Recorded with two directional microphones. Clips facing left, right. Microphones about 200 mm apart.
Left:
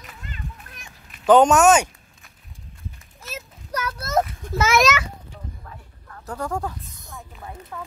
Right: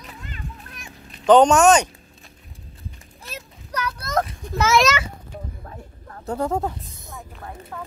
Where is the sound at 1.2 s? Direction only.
5° left (ahead or behind).